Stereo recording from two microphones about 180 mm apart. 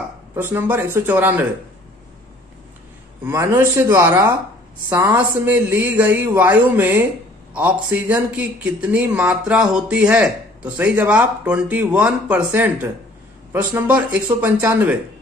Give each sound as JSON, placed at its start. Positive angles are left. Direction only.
{"t": 0.4, "sound": "speech", "side_deg": -10}
{"t": 3.3, "sound": "speech", "side_deg": -15}